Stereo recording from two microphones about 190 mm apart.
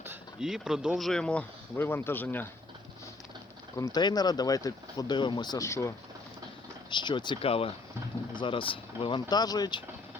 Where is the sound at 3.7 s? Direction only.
20° left (ahead or behind).